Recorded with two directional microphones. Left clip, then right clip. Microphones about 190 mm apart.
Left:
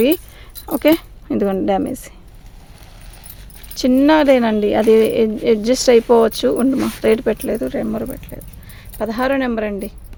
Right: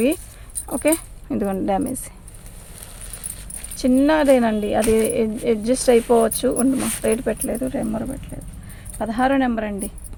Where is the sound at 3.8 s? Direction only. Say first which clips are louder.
Left 4 dB; 50° left (ahead or behind).